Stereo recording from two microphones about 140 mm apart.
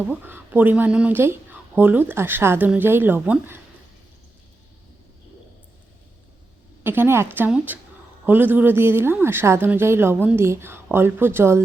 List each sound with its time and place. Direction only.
0.0 s speech: 15° right (ahead or behind)
6.8 s speech: 15° right (ahead or behind)